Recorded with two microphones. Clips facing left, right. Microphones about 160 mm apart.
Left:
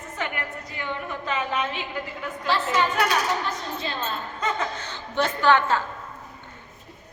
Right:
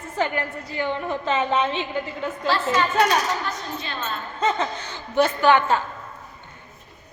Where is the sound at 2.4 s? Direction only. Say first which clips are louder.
Right 1 dB; 20° left (ahead or behind).